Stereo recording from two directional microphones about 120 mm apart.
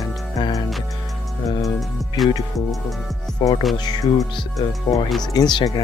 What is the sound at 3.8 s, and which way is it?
Speech, 35° left (ahead or behind).